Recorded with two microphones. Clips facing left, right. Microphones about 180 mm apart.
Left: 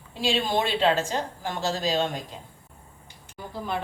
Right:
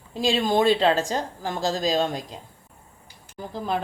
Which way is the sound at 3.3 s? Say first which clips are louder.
Right 3 dB; 40° right (ahead or behind).